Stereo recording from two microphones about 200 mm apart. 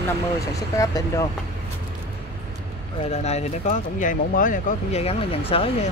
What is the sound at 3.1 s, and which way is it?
Speech, 35° left (ahead or behind).